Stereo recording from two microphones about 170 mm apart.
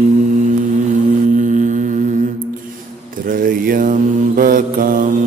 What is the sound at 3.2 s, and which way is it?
Mantra, 55° right (ahead or behind).